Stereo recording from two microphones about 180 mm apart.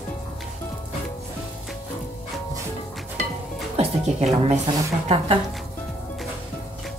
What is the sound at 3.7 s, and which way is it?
Music, 35° right (ahead or behind).